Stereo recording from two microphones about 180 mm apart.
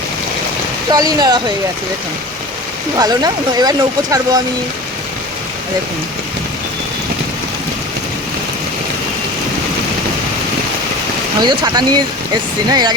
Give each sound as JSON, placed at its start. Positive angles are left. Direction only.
{"t": 0.9, "sound": "speech", "side_deg": -20}
{"t": 3.0, "sound": "speech", "side_deg": -20}
{"t": 11.3, "sound": "speech", "side_deg": -25}